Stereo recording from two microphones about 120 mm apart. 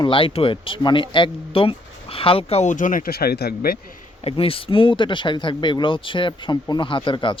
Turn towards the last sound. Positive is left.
turn(degrees=45)  # may be behind; listen again after turning